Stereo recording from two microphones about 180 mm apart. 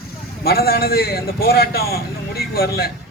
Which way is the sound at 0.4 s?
60° left (ahead or behind).